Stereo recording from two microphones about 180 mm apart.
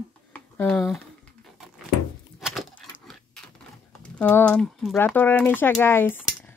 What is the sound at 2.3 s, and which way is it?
Keys jangling, centre (ahead or behind).